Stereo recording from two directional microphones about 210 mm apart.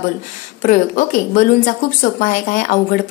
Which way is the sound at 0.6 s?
40° left (ahead or behind).